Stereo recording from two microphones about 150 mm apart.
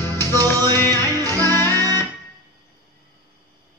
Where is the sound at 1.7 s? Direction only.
25° right (ahead or behind).